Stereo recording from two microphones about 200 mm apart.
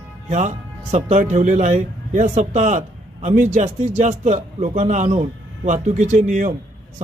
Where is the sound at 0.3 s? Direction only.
35° right (ahead or behind).